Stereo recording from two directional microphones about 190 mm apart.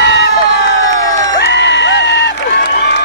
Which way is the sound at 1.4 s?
65° left (ahead or behind).